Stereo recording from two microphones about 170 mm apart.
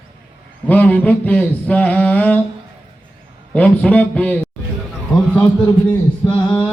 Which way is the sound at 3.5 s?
10° left (ahead or behind).